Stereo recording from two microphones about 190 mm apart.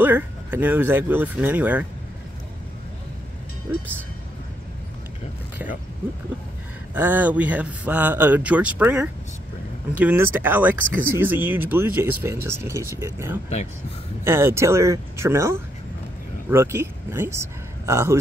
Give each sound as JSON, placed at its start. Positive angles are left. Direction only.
{"t": 0.0, "sound": "speech", "side_deg": -10}
{"t": 3.7, "sound": "speech", "side_deg": -10}
{"t": 6.9, "sound": "speech", "side_deg": -10}